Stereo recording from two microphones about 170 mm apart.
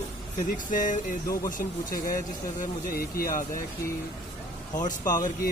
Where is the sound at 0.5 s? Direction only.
55° left (ahead or behind).